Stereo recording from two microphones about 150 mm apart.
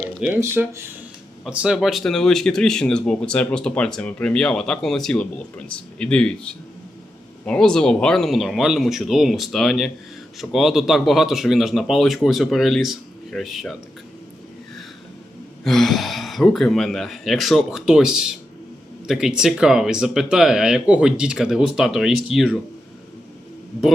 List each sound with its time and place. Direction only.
0.3 s speech: 15° right (ahead or behind)
1.5 s speech: 5° right (ahead or behind)
15.6 s speech: centre (ahead or behind)